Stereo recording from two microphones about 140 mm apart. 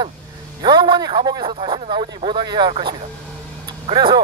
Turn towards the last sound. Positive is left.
turn(degrees=-35)  # may be behind; listen again after turning